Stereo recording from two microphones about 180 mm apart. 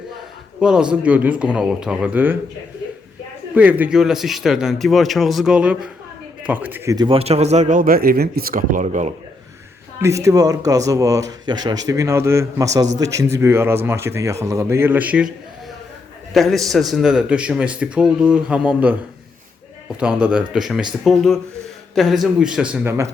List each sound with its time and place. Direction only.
0.6 s speech: 5° right (ahead or behind)
3.5 s a man's voice: 10° right (ahead or behind)
6.9 s speech: 25° right (ahead or behind)
10.2 s speech: 20° right (ahead or behind)
16.3 s a man's voice: centre (ahead or behind)
20.0 s a man's voice: 5° right (ahead or behind)